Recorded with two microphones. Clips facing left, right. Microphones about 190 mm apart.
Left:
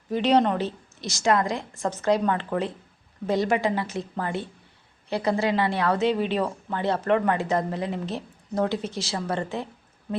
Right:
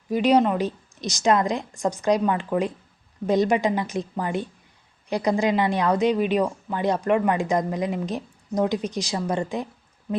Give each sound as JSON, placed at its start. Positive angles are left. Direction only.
{"t": 0.1, "sound": "speech", "side_deg": -10}